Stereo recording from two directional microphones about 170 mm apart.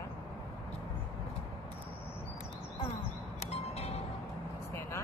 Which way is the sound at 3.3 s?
40° left (ahead or behind).